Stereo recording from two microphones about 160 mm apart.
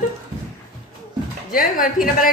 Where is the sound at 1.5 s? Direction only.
60° left (ahead or behind).